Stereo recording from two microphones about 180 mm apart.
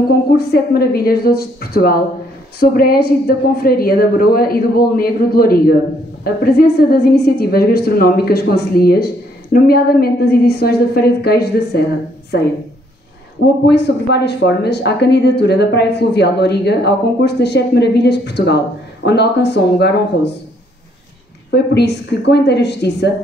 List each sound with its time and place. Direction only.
0.4 s a woman's voice: 60° left (ahead or behind)
21.5 s speech: 70° left (ahead or behind)